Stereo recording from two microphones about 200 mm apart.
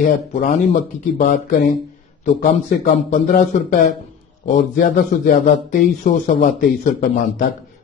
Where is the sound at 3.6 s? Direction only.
45° left (ahead or behind).